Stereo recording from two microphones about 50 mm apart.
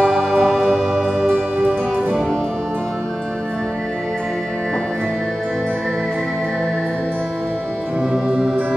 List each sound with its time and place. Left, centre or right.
0.0 s music: centre
1.3 s music: right
8.1 s music: centre